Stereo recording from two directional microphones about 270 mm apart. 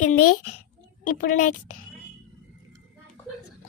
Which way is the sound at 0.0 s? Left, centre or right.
Left.